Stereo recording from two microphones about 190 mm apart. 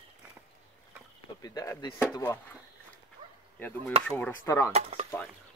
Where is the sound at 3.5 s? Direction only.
10° left (ahead or behind).